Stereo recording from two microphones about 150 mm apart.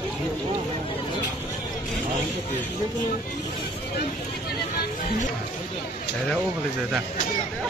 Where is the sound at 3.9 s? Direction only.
90° left.